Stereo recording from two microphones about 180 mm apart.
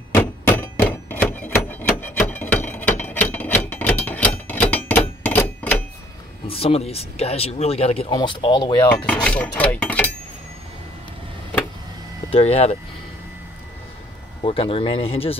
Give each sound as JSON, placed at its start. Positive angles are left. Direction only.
{"t": 0.1, "sound": "hammer", "side_deg": 10}
{"t": 6.4, "sound": "speech", "side_deg": 35}
{"t": 9.0, "sound": "speech", "side_deg": 5}
{"t": 12.3, "sound": "speech", "side_deg": 35}
{"t": 14.4, "sound": "speech", "side_deg": 30}